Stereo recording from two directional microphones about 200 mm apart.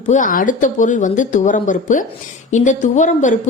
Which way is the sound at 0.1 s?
40° left (ahead or behind).